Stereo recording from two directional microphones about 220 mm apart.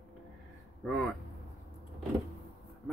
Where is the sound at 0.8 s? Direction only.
5° left (ahead or behind).